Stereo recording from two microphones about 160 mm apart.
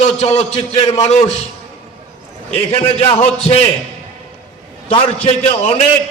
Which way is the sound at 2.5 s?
40° left (ahead or behind).